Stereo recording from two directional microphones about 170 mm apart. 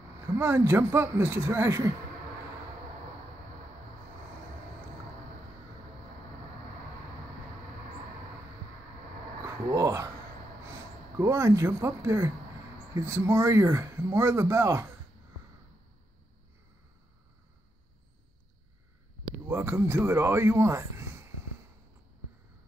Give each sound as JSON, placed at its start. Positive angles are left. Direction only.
{"t": 0.4, "sound": "speech", "side_deg": -15}
{"t": 9.5, "sound": "speech", "side_deg": -20}
{"t": 19.4, "sound": "speech", "side_deg": -15}